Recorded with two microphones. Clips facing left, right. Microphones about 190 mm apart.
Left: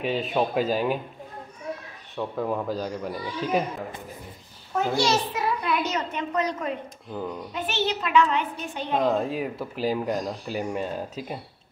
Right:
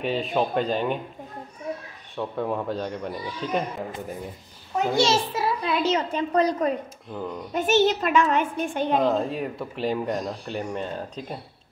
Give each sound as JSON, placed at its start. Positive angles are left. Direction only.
{"t": 0.0, "sound": "speech", "side_deg": 0}
{"t": 2.1, "sound": "speech", "side_deg": 0}
{"t": 4.7, "sound": "a child's voice", "side_deg": -25}
{"t": 7.5, "sound": "a child's voice", "side_deg": -45}
{"t": 9.0, "sound": "speech", "side_deg": 0}